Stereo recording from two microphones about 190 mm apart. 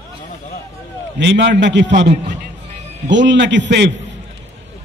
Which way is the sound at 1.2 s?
65° right (ahead or behind).